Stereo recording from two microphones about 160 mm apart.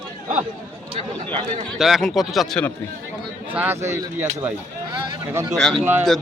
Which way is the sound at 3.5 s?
10° right (ahead or behind).